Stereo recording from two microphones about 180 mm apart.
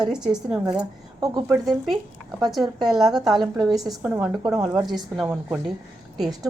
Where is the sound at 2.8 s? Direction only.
Centre (ahead or behind).